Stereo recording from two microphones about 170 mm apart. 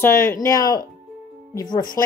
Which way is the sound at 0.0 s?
15° left (ahead or behind).